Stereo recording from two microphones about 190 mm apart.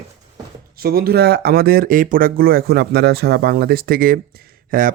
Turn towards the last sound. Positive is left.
turn(degrees=-45)  # may be behind; listen again after turning